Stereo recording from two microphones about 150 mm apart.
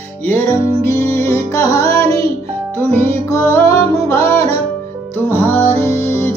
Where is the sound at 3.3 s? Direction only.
15° left (ahead or behind).